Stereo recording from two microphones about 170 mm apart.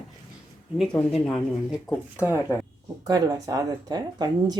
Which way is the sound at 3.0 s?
20° right (ahead or behind).